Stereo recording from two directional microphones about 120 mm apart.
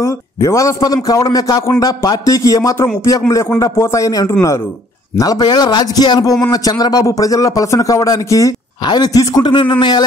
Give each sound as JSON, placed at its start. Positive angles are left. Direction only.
{"t": 0.0, "sound": "a man's voice", "side_deg": 25}